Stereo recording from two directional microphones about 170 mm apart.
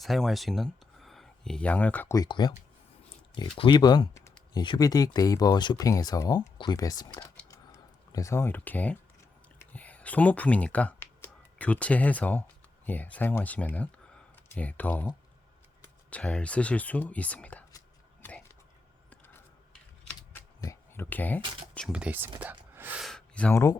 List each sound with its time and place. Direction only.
0.0 s speech: centre (ahead or behind); by 2.5 s 25° left (ahead or behind)
3.6 s speech: 25° left (ahead or behind)
7.4 s typing: 20° left (ahead or behind)
9.6 s speech: 10° left (ahead or behind)
18.2 s a sound: 10° left (ahead or behind)
20.6 s speech: 15° left (ahead or behind)
21.8 s speech: 5° right (ahead or behind)
23.0 s a sound: 5° left (ahead or behind)